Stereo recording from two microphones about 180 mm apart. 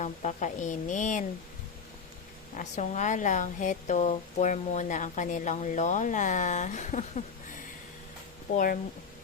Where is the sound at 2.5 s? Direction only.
40° left (ahead or behind).